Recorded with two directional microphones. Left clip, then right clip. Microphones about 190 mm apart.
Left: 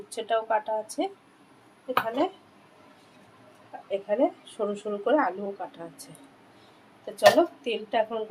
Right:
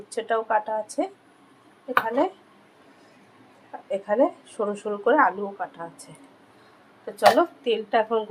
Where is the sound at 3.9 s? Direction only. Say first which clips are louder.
Right 3 dB; 15° right (ahead or behind).